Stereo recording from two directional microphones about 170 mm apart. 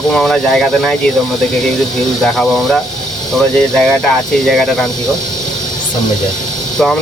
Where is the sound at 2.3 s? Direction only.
Centre (ahead or behind).